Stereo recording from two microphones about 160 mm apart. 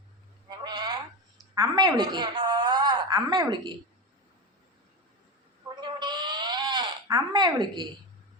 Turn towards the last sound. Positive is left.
turn(degrees=-25)  # may be behind; listen again after turning